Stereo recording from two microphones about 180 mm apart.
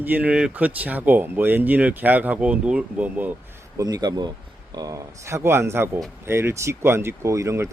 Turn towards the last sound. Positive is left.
turn(degrees=-15)  # may be behind; listen again after turning